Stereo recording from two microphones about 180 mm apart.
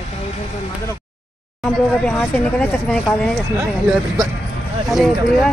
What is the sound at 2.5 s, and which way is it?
Speech, 5° left (ahead or behind).